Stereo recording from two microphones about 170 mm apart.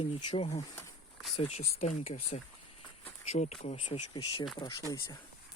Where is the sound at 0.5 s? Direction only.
20° left (ahead or behind).